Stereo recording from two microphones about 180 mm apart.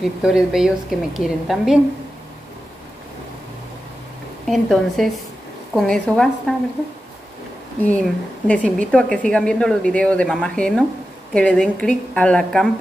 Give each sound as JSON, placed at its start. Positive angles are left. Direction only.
{"t": 0.0, "sound": "a woman's voice", "side_deg": -5}
{"t": 4.5, "sound": "a woman's voice", "side_deg": 0}
{"t": 7.8, "sound": "a woman's voice", "side_deg": 5}